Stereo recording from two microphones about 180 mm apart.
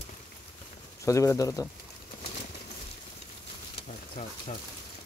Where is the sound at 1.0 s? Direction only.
15° left (ahead or behind).